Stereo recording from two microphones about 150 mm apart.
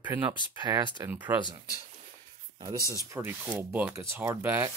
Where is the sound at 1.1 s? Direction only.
10° right (ahead or behind).